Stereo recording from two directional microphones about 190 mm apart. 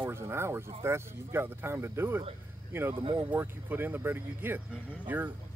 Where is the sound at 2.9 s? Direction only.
25° right (ahead or behind).